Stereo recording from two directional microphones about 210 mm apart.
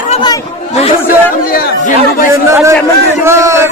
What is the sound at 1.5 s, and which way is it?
Speech, 45° left (ahead or behind).